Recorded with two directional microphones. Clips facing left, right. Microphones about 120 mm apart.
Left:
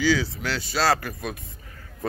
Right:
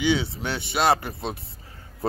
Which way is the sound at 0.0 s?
25° right (ahead or behind).